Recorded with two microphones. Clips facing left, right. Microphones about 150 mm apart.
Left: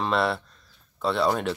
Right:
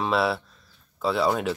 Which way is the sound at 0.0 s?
5° right (ahead or behind).